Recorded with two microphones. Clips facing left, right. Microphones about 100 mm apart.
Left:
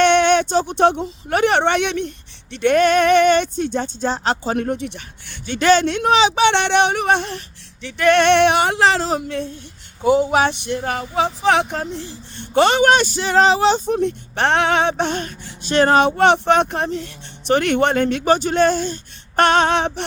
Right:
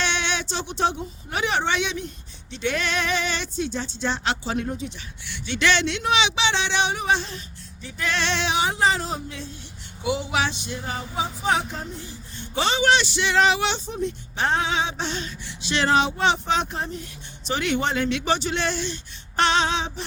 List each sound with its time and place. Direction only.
0.0 s speech: 55° left (ahead or behind)
4.5 s speech: 60° left (ahead or behind); by 6.5 s 45° left (ahead or behind)
6.5 s speech: 60° left (ahead or behind)
10.0 s speech: 45° left (ahead or behind)
13.8 s speech: 60° left (ahead or behind)